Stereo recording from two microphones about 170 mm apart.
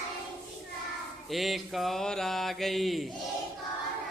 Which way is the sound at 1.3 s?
Centre (ahead or behind).